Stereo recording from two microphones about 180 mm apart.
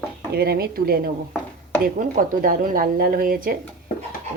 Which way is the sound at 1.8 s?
50° right (ahead or behind).